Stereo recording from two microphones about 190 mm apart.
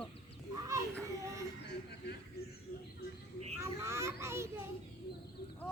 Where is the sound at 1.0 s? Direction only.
15° right (ahead or behind).